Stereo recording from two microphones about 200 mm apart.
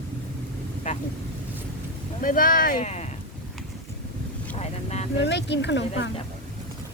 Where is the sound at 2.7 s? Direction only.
35° left (ahead or behind).